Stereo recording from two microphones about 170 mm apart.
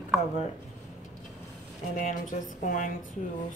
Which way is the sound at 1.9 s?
50° left (ahead or behind).